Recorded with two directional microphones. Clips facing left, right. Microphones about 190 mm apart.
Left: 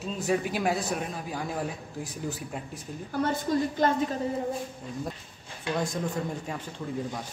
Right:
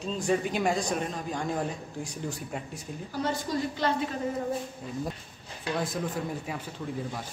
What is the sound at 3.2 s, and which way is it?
Speech, 50° left (ahead or behind).